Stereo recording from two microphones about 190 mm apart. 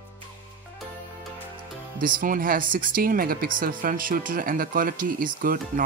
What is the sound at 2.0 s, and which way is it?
Speech, 45° right (ahead or behind).